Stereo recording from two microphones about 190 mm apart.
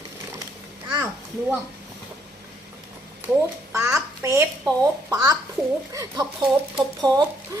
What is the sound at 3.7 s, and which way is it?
A child's voice, 15° right (ahead or behind).